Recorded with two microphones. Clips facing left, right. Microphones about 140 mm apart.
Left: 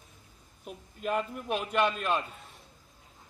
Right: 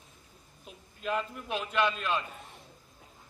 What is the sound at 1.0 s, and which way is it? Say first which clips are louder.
Speech: left 2 dB; 5° left (ahead or behind).